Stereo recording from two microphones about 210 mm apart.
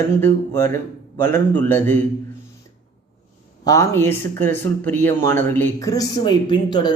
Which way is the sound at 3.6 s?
15° left (ahead or behind).